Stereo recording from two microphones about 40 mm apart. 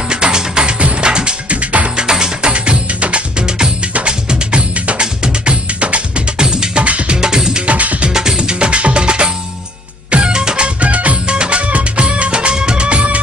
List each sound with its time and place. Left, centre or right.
0.1 s music: right
2.0 s music: centre
2.5 s music: right
6.9 s music: right
7.2 s music: centre
7.6 s music: right
8.1 s music: centre
10.8 s music: right